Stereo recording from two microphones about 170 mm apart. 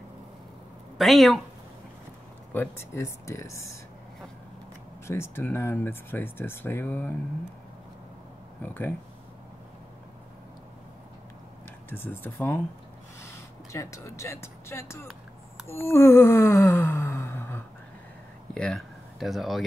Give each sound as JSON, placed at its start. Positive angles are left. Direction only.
{"t": 0.9, "sound": "speech", "side_deg": 0}
{"t": 2.5, "sound": "speech", "side_deg": 15}
{"t": 5.0, "sound": "speech", "side_deg": 15}
{"t": 11.9, "sound": "speech", "side_deg": 10}
{"t": 15.6, "sound": "sigh", "side_deg": 15}
{"t": 18.5, "sound": "speech", "side_deg": 5}